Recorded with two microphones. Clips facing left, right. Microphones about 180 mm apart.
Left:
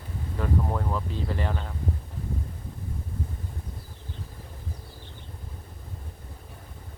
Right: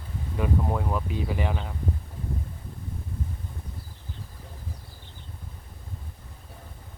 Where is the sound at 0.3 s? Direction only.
10° right (ahead or behind).